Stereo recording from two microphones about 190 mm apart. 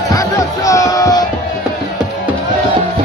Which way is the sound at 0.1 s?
15° left (ahead or behind).